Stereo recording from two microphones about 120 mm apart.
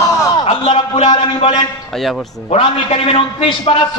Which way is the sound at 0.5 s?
55° left (ahead or behind).